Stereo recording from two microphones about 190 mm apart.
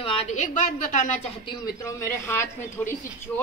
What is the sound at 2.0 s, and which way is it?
Speech, 15° left (ahead or behind).